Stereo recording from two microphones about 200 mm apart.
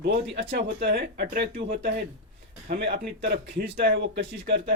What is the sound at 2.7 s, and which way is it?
Speech, 55° right (ahead or behind).